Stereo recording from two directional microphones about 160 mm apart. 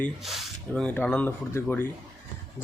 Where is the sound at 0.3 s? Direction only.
Centre (ahead or behind).